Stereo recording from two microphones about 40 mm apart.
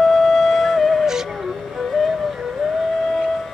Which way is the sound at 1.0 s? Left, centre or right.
Centre.